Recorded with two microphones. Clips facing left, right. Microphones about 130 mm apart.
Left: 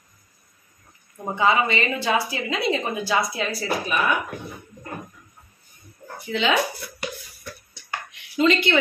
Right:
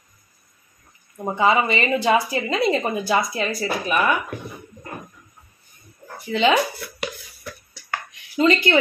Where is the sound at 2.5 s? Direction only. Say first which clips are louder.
Right 3 dB; 50° right (ahead or behind).